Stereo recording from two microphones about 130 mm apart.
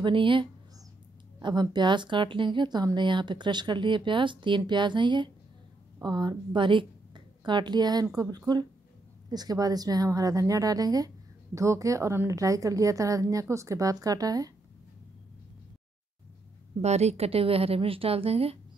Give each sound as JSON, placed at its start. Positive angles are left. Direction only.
{"t": 0.0, "sound": "a woman's voice", "side_deg": -40}
{"t": 16.8, "sound": "a woman's voice", "side_deg": -55}